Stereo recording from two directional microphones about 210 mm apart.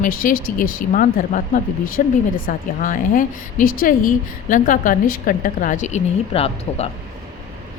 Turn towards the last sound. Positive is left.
turn(degrees=30)  # may be behind; listen again after turning